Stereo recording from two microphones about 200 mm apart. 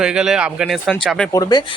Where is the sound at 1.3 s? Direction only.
20° left (ahead or behind).